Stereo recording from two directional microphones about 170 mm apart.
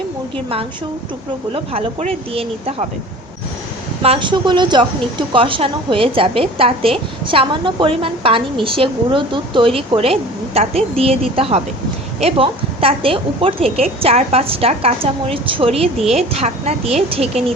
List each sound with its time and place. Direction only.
1.5 s speech: 35° right (ahead or behind)
4.0 s speech: 30° right (ahead or behind)